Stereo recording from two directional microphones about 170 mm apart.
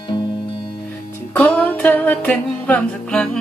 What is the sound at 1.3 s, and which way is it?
Music, 10° left (ahead or behind).